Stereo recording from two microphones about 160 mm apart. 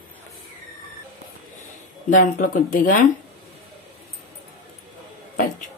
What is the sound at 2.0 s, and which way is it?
Speech, 55° left (ahead or behind).